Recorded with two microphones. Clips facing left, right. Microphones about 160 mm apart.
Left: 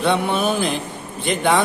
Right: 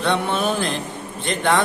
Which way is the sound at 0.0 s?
5° left (ahead or behind).